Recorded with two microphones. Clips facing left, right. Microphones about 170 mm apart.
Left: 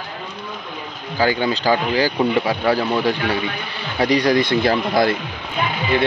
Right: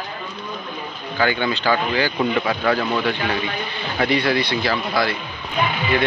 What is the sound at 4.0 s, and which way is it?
Speech, 40° left (ahead or behind).